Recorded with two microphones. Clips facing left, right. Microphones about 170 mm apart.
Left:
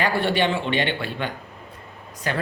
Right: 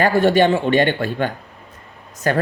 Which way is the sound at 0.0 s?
45° right (ahead or behind).